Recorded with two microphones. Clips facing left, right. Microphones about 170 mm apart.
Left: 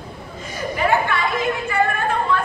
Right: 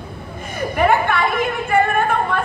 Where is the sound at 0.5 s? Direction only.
60° right (ahead or behind).